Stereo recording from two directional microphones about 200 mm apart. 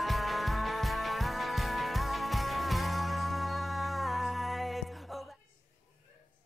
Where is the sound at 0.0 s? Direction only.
Centre (ahead or behind).